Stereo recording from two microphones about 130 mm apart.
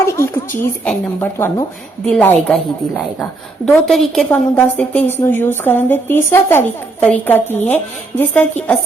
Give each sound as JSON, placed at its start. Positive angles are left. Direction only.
{"t": 0.1, "sound": "a woman's voice", "side_deg": 20}
{"t": 0.9, "sound": "a woman's voice", "side_deg": 10}
{"t": 1.4, "sound": "a woman's voice", "side_deg": 20}
{"t": 2.0, "sound": "a woman's voice", "side_deg": 5}
{"t": 3.7, "sound": "a woman's voice", "side_deg": 5}